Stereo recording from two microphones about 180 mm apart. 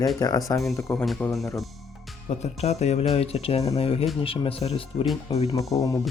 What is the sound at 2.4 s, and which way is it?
Speech, 35° left (ahead or behind).